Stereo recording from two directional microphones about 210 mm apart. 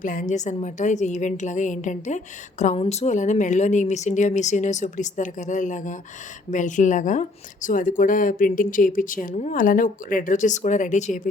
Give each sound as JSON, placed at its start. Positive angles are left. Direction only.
{"t": 0.0, "sound": "a woman's voice", "side_deg": 40}